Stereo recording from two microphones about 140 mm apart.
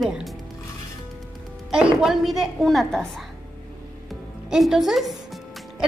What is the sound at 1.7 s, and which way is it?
A woman's voice, 5° right (ahead or behind).